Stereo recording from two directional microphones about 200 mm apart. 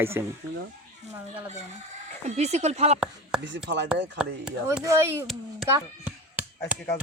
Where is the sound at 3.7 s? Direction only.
60° right (ahead or behind).